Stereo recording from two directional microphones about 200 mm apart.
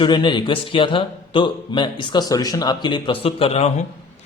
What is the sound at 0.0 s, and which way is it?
Speech, 25° left (ahead or behind).